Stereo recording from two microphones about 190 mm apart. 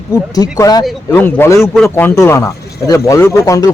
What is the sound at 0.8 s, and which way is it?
Speech, centre (ahead or behind).